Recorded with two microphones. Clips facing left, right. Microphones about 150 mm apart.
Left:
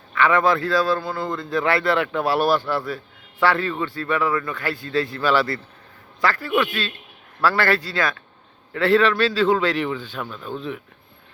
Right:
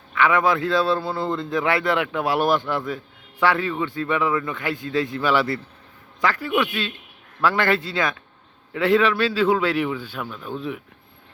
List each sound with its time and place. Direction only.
0.1 s a man's voice: 10° right (ahead or behind); by 1.5 s 30° right (ahead or behind)
1.5 s a man's voice: 15° right (ahead or behind)